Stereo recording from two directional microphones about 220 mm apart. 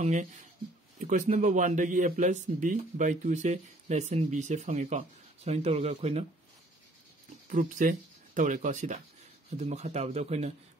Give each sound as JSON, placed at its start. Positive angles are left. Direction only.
{"t": 0.0, "sound": "speech", "side_deg": -30}
{"t": 7.4, "sound": "speech", "side_deg": -35}